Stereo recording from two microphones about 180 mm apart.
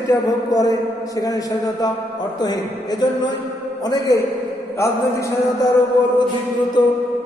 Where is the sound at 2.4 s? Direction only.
20° left (ahead or behind).